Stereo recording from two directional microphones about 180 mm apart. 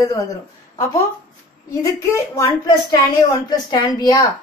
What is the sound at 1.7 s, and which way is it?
A woman's voice, 15° left (ahead or behind).